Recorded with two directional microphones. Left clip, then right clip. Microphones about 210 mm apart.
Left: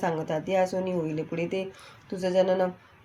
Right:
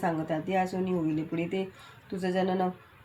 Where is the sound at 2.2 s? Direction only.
40° left (ahead or behind).